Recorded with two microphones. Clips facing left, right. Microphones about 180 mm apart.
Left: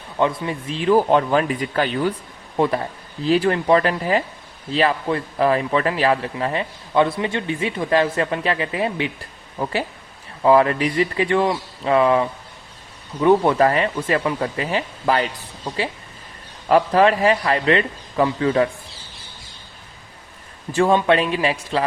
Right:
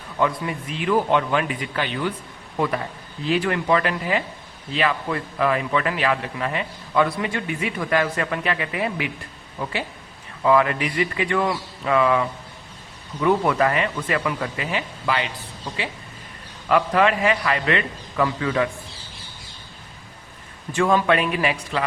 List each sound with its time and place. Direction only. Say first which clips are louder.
0.2 s a man's voice: left 2 dB; 25° left (ahead or behind)
9.6 s speech: left 4 dB; 45° left (ahead or behind)
10.4 s speech: left 4 dB; 35° left (ahead or behind)
16.6 s speech: left 4 dB; 35° left (ahead or behind)
20.7 s a man's voice: left 3 dB; 30° left (ahead or behind)